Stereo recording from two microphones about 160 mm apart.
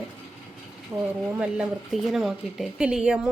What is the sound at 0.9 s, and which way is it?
Speech, 10° right (ahead or behind).